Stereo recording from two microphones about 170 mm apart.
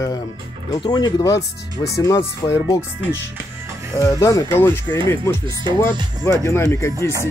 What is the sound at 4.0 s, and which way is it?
Speech, 20° left (ahead or behind).